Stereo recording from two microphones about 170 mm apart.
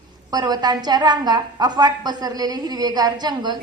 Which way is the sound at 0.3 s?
25° right (ahead or behind).